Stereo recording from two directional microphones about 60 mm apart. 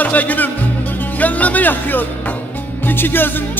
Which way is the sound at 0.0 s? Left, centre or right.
Left.